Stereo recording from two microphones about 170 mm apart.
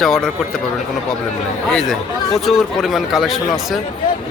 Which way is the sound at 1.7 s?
Centre (ahead or behind).